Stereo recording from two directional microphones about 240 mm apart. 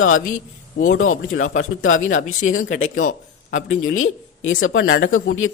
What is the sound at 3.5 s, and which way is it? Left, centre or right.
Speech, left.